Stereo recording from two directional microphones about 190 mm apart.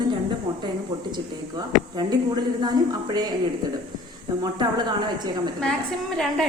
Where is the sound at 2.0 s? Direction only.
20° right (ahead or behind).